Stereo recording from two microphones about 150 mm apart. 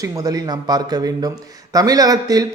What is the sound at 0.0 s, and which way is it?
A man's voice, 25° right (ahead or behind).